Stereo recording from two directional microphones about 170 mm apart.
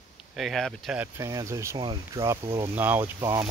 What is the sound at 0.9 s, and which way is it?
Speech, 15° right (ahead or behind).